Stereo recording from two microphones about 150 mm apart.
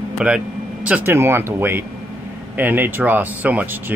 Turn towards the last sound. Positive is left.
turn(degrees=-10)  # may be behind; listen again after turning